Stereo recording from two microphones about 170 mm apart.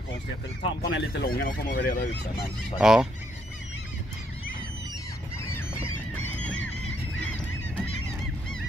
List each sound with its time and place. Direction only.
0.8 s speech: 85° left; by 2.5 s 55° left (ahead or behind)
2.8 s goose: 5° right (ahead or behind)
6.4 s honk: 10° left (ahead or behind)